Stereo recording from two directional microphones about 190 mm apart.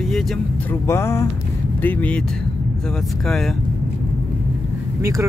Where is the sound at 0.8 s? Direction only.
15° left (ahead or behind).